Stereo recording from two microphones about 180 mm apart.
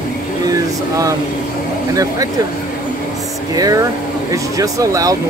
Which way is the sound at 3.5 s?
20° right (ahead or behind).